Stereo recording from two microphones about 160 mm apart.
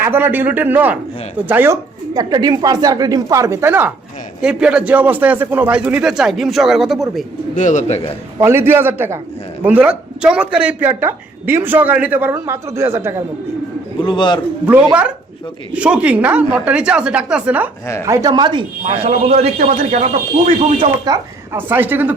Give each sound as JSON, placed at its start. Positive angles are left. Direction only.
{"t": 0.0, "sound": "a woman's voice", "side_deg": -15}
{"t": 7.5, "sound": "speech", "side_deg": 50}
{"t": 8.4, "sound": "speech", "side_deg": -15}
{"t": 14.0, "sound": "a man's voice", "side_deg": 30}
{"t": 15.7, "sound": "speech", "side_deg": -10}
{"t": 18.0, "sound": "a woman's voice", "side_deg": -20}
{"t": 18.9, "sound": "speech", "side_deg": -40}
{"t": 19.5, "sound": "speech", "side_deg": -55}
{"t": 21.0, "sound": "speech", "side_deg": -20}